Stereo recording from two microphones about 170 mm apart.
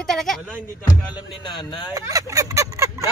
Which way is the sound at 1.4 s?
25° left (ahead or behind).